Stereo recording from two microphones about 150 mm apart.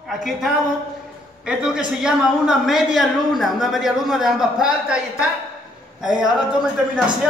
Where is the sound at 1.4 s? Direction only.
5° right (ahead or behind).